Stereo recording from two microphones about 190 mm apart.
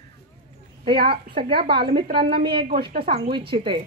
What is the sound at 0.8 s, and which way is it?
Speech, 25° right (ahead or behind).